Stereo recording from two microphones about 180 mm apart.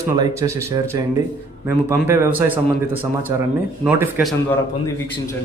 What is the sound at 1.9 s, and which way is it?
Speech, 15° right (ahead or behind).